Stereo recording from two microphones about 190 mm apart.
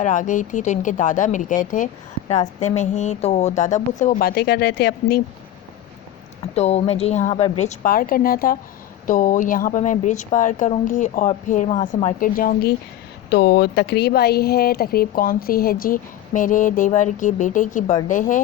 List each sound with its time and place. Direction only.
0.0 s speech: 40° left (ahead or behind); by 5.2 s 60° left (ahead or behind)
6.4 s a woman's voice: 35° left (ahead or behind)
13.3 s a woman's voice: 60° left (ahead or behind); by 18.3 s 45° left (ahead or behind)